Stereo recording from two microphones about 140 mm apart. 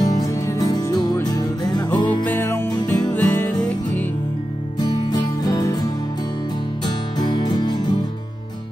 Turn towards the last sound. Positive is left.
turn(degrees=30)  # may be behind; listen again after turning